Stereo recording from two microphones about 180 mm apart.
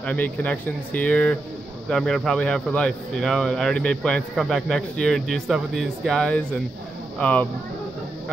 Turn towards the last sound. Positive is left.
turn(degrees=5)  # may be behind; listen again after turning